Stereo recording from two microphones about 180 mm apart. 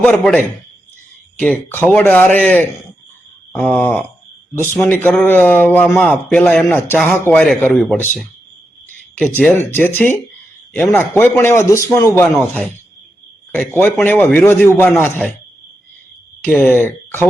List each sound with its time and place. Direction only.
0.0 s speech: 5° left (ahead or behind)
10.8 s speech: centre (ahead or behind)
11.1 s speech: 10° left (ahead or behind)
13.8 s speech: 10° left (ahead or behind)
16.4 s speech: 10° left (ahead or behind)